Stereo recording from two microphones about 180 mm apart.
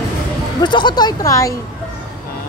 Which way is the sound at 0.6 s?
25° left (ahead or behind).